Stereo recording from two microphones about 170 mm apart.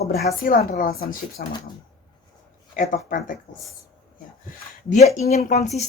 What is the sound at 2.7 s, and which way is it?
Speech, 50° left (ahead or behind).